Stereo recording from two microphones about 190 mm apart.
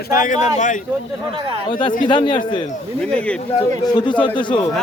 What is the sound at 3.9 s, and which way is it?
Speech, 25° left (ahead or behind).